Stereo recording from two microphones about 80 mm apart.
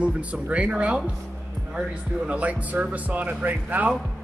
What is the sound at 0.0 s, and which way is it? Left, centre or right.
Speech, centre.